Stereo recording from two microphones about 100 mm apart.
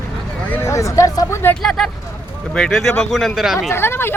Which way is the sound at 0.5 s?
30° left (ahead or behind).